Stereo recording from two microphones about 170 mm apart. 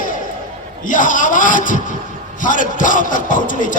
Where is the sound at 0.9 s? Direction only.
50° left (ahead or behind).